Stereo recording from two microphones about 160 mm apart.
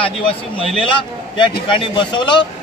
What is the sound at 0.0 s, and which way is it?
Speech, 35° left (ahead or behind).